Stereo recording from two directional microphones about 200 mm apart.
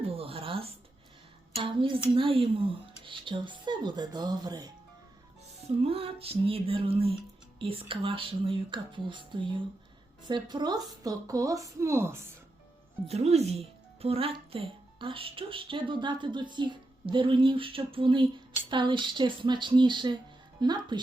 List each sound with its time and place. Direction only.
0.0 s a sound: 30° right (ahead or behind)
1.5 s a woman's voice: 25° right (ahead or behind)
13.1 s speech: 30° right (ahead or behind)